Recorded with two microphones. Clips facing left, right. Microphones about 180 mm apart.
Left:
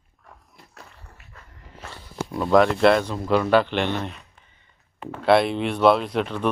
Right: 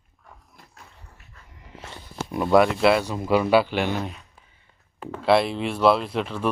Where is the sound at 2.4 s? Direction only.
10° right (ahead or behind).